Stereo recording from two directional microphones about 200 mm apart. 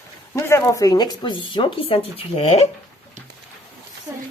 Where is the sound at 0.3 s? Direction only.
15° left (ahead or behind); by 2.6 s 30° left (ahead or behind).